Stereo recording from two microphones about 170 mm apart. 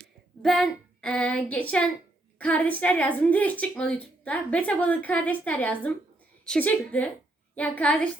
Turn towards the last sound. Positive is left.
turn(degrees=10)  # may be behind; listen again after turning